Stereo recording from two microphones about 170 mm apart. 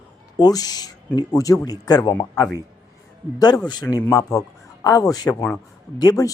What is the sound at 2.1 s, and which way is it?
Speech, 10° left (ahead or behind).